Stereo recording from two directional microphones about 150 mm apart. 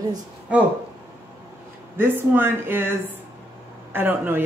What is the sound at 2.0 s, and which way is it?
Speech, 15° right (ahead or behind).